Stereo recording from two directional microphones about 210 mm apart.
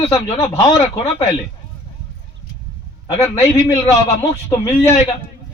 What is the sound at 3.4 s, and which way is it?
A man's voice, 15° left (ahead or behind).